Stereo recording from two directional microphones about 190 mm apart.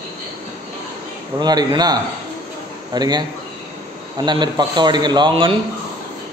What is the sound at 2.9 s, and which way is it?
A man's voice, 20° right (ahead or behind).